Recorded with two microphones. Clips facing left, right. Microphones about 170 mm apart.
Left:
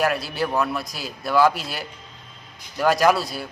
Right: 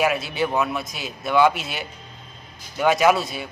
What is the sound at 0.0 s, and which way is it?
A man's voice, centre (ahead or behind).